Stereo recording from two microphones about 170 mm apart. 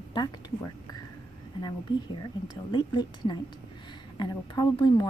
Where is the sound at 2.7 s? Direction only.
25° left (ahead or behind).